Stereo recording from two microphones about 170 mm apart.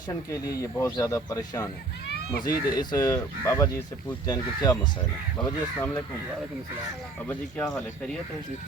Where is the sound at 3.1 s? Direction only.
15° left (ahead or behind).